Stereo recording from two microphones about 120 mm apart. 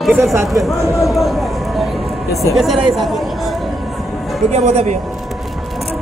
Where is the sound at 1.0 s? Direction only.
Centre (ahead or behind).